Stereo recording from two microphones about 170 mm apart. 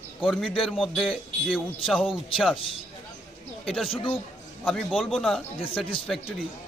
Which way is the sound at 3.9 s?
35° left (ahead or behind).